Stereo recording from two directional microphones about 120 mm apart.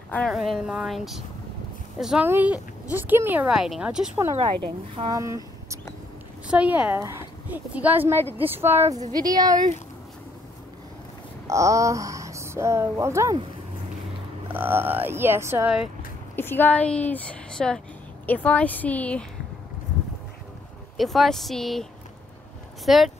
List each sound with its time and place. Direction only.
0.3 s speech: centre (ahead or behind)
2.2 s speech: 15° right (ahead or behind)
3.4 s speech: 5° right (ahead or behind)
4.6 s a woman's voice: 45° right (ahead or behind)
5.1 s speech: 25° right (ahead or behind)
6.4 s speech: 10° right (ahead or behind)
9.1 s speech: 35° right (ahead or behind)
11.4 s speech: 25° right (ahead or behind)
14.5 s speech: 15° right (ahead or behind)
16.3 s a woman's voice: 15° left (ahead or behind)
21.0 s speech: centre (ahead or behind)
22.8 s speech: centre (ahead or behind)